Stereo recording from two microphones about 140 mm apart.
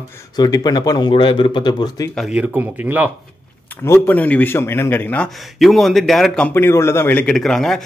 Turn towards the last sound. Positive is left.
turn(degrees=0)  # may be behind; listen again after turning